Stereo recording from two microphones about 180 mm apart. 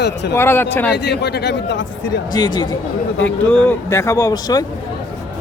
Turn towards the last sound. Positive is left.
turn(degrees=20)  # may be behind; listen again after turning